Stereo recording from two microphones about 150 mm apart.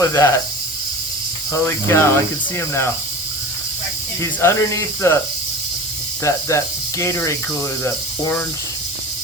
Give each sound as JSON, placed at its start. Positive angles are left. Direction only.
{"t": 0.0, "sound": "speech", "side_deg": 20}
{"t": 1.5, "sound": "speech", "side_deg": 15}
{"t": 4.2, "sound": "speech", "side_deg": 20}
{"t": 6.3, "sound": "speech", "side_deg": 20}